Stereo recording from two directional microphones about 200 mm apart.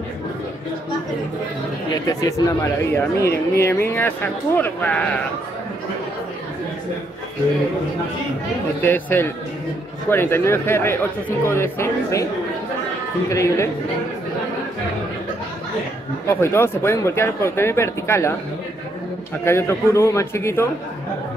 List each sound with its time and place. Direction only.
2.1 s speech: 15° left (ahead or behind)
8.8 s speech: 10° left (ahead or behind)
13.3 s speech: 15° left (ahead or behind)
16.3 s speech: 10° left (ahead or behind)
19.4 s speech: 15° left (ahead or behind)